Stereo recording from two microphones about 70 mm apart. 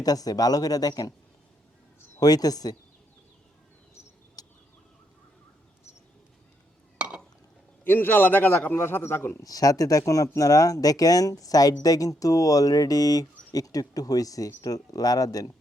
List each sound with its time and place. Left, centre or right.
0.0 s speech: left
2.2 s speech: left
4.4 s a sound: left
7.9 s a man's voice: left
9.4 s speech: left